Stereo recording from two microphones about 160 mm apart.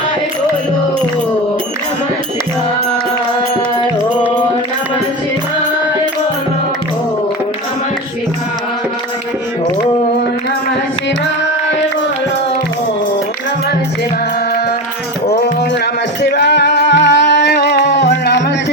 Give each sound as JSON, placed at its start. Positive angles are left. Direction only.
{"t": 16.2, "sound": "music", "side_deg": 90}